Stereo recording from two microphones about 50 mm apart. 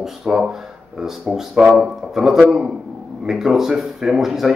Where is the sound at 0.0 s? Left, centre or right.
Centre.